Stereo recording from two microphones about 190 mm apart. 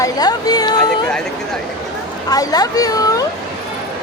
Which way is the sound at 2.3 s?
20° left (ahead or behind).